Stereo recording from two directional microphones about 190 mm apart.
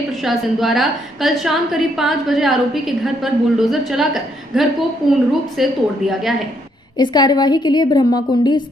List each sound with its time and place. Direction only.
0.2 s a woman's voice: centre (ahead or behind)
7.0 s a woman's voice: 20° left (ahead or behind)